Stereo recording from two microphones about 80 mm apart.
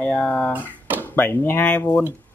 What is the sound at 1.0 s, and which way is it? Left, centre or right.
Speech, left.